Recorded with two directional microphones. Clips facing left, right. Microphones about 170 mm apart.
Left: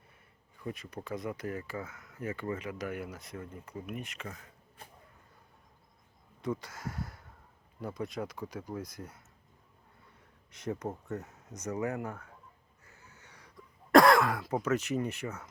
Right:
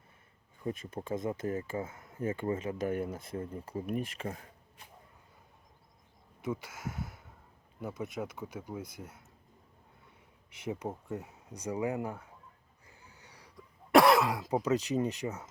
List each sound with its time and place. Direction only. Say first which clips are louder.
0.9 s speech: right 2 dB; 25° right (ahead or behind)
6.4 s speech: left 1 dB; 5° right (ahead or behind)
10.7 s speech: left 1 dB; 10° right (ahead or behind)
12.8 s wheeze: right 1 dB; 15° right (ahead or behind)
13.9 s speech: left 1 dB; 5° right (ahead or behind)